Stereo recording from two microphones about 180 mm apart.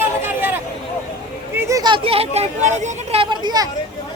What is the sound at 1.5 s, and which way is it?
Speech, 15° right (ahead or behind).